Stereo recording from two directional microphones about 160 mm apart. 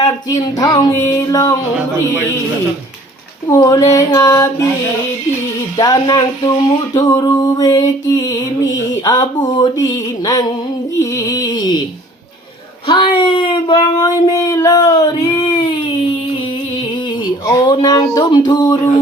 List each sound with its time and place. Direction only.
0.0 s speech: 20° left (ahead or behind)
3.4 s speech: 25° left (ahead or behind)
5.7 s speech: 25° left (ahead or behind)
12.9 s speech: 35° left (ahead or behind)
17.4 s speech: 25° left (ahead or behind)